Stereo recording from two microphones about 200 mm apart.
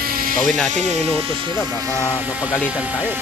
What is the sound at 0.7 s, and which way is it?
Speech, 30° right (ahead or behind).